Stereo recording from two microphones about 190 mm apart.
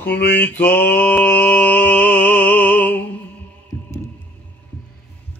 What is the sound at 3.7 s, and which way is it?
Heart sounds, 10° left (ahead or behind).